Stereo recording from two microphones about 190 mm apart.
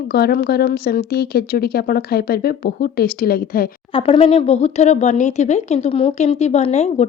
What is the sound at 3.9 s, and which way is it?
Speech, 30° left (ahead or behind).